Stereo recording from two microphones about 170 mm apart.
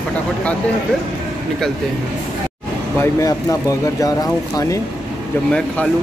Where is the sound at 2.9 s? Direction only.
15° left (ahead or behind).